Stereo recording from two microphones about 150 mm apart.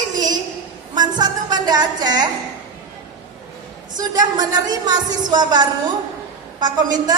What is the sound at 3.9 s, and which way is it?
A woman's voice, 25° right (ahead or behind).